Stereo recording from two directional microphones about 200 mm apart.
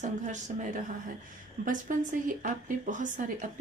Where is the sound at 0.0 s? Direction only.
40° right (ahead or behind).